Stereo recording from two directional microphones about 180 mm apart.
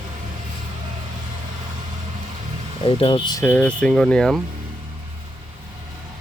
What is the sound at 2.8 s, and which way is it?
Speech, 30° left (ahead or behind).